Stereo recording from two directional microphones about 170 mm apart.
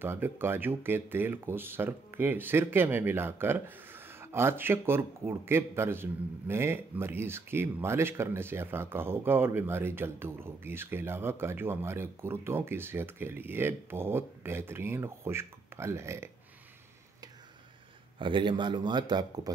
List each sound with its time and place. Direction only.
0.0 s speech: 15° right (ahead or behind)
18.2 s speech: 30° right (ahead or behind)